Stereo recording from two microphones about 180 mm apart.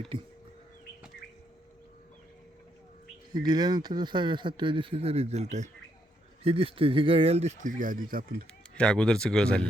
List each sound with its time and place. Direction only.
3.3 s speech: 25° right (ahead or behind); by 8.4 s 55° right (ahead or behind)
8.7 s speech: 5° left (ahead or behind)